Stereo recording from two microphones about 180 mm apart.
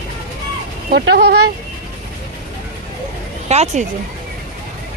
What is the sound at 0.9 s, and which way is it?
Speech, 65° right (ahead or behind).